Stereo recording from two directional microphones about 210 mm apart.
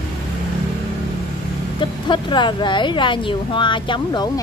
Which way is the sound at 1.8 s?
20° left (ahead or behind).